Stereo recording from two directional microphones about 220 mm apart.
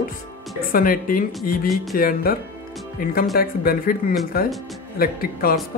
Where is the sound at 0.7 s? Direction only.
40° left (ahead or behind).